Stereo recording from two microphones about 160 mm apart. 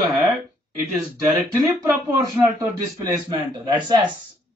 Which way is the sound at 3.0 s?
25° right (ahead or behind).